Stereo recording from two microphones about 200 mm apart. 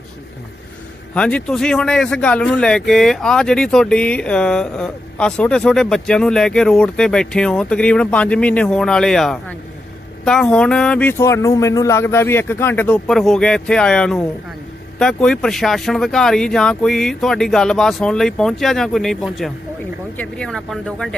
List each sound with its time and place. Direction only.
1.1 s speech: 5° left (ahead or behind)